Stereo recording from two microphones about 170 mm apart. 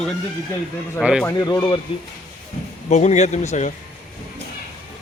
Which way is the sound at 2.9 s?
40° left (ahead or behind).